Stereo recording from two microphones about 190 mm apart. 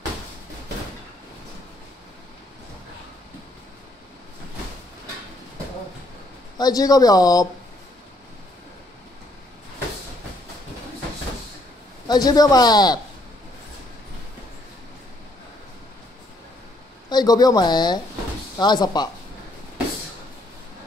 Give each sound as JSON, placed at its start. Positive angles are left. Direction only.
{"t": 6.6, "sound": "a man's voice", "side_deg": 20}
{"t": 12.1, "sound": "a man's voice", "side_deg": 20}
{"t": 17.1, "sound": "a man's voice", "side_deg": 20}